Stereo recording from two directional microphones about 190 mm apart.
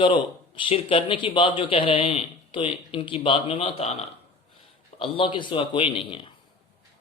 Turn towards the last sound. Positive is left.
turn(degrees=30)  # may be behind; listen again after turning